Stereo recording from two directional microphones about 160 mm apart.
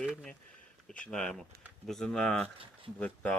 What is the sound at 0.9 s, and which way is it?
A man's voice, 5° left (ahead or behind).